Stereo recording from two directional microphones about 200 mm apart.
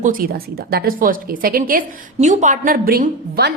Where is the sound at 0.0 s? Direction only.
45° right (ahead or behind).